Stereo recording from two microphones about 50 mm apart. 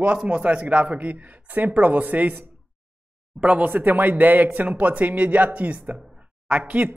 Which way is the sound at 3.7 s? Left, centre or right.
Right.